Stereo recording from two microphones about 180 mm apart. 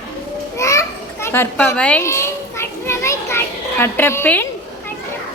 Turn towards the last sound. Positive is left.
turn(degrees=10)  # may be behind; listen again after turning